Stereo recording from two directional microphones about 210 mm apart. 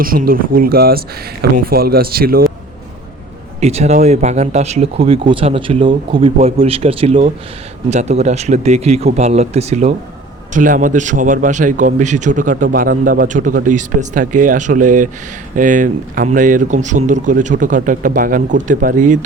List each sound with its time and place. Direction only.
0.0 s speech: 45° right (ahead or behind)
3.6 s speech: 30° right (ahead or behind)